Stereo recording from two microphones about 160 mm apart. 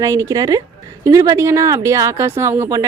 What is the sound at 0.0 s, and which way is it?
Speech, 20° right (ahead or behind).